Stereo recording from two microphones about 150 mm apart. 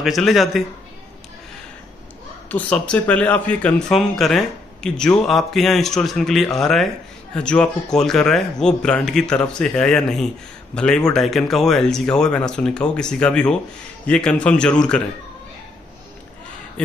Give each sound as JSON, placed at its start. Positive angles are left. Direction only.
{"t": 0.0, "sound": "speech", "side_deg": 0}
{"t": 2.5, "sound": "speech", "side_deg": 10}